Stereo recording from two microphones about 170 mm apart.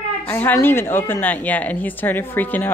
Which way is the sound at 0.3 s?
10° left (ahead or behind).